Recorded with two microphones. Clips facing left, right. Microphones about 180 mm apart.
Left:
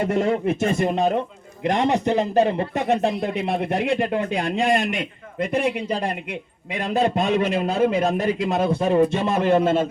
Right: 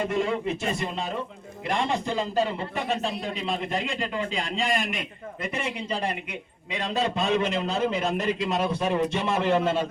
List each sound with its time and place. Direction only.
0.2 s speech: 45° left (ahead or behind)